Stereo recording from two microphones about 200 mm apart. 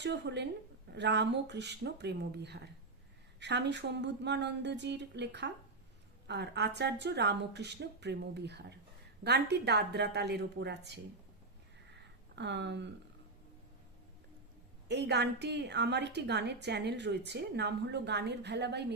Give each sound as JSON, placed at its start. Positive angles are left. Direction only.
{"t": 0.0, "sound": "a woman's voice", "side_deg": -60}
{"t": 12.4, "sound": "a woman's voice", "side_deg": -60}
{"t": 14.8, "sound": "a woman's voice", "side_deg": -60}